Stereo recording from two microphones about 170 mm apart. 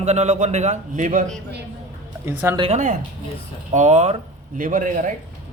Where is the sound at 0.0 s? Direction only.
40° right (ahead or behind).